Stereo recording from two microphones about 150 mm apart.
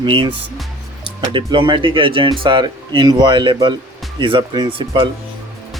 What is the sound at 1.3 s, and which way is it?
Speech, 30° right (ahead or behind).